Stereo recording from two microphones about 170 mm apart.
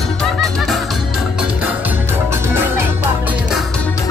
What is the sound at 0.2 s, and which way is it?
Music, centre (ahead or behind).